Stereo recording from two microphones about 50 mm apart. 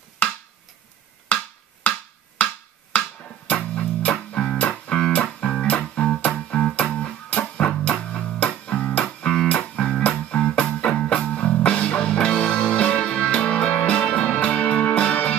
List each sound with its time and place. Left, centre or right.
0.2 s a sound: left
1.3 s wood block: left
4.6 s music: left